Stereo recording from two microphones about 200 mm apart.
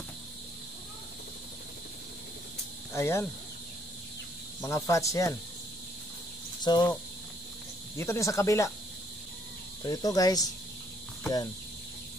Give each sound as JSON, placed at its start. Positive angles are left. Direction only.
{"t": 2.9, "sound": "speech", "side_deg": 10}
{"t": 4.6, "sound": "speech", "side_deg": 15}
{"t": 6.6, "sound": "speech", "side_deg": 20}
{"t": 8.0, "sound": "speech", "side_deg": 15}
{"t": 9.8, "sound": "speech", "side_deg": 20}